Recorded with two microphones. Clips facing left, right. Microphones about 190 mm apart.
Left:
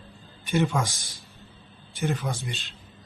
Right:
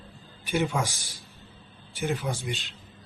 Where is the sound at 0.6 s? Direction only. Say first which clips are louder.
Left 3 dB; 15° right (ahead or behind).